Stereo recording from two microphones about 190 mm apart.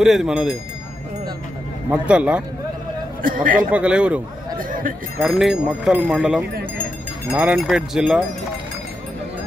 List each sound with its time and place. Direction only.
0.0 s speech: centre (ahead or behind)
1.9 s speech: 5° right (ahead or behind)
3.2 s a man's voice: 45° right (ahead or behind)
3.7 s speech: 5° right (ahead or behind)
4.6 s a sound: 45° right (ahead or behind)
5.2 s speech: centre (ahead or behind)